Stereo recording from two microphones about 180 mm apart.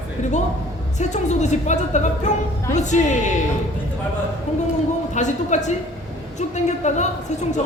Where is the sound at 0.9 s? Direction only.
40° left (ahead or behind).